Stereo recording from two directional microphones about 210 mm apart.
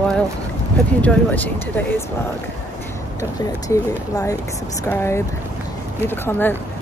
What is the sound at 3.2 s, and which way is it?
A woman's voice, 15° left (ahead or behind).